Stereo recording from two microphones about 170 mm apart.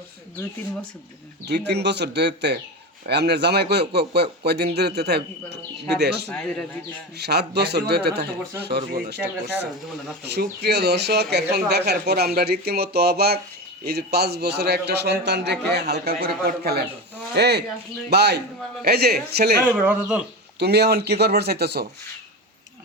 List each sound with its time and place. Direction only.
1.5 s a man's voice: 80° right
17.3 s a man's voice: 75° right (ahead or behind)
19.6 s speech: 10° right (ahead or behind)
20.6 s a man's voice: 75° right (ahead or behind)